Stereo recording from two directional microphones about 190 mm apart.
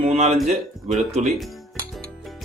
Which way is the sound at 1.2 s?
Centre (ahead or behind).